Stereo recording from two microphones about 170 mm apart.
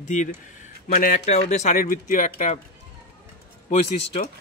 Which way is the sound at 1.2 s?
40° left (ahead or behind).